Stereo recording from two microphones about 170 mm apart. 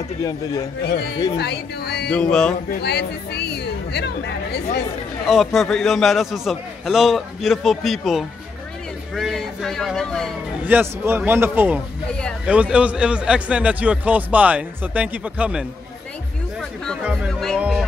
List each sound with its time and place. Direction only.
1.4 s speech: 75° left (ahead or behind)
2.0 s a man's voice: 5° left (ahead or behind)
2.8 s speech: 75° left (ahead or behind)
5.2 s a man's voice: centre (ahead or behind)
10.7 s a man's voice: 10° right (ahead or behind)
16.8 s speech: centre (ahead or behind)
17.6 s music: 5° right (ahead or behind)